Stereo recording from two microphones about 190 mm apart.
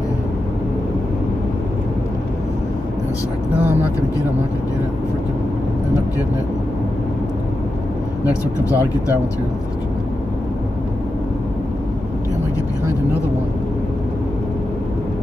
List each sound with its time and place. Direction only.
8.6 s speech: 15° left (ahead or behind)